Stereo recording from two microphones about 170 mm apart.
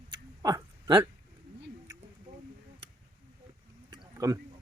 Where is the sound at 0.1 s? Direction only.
25° right (ahead or behind).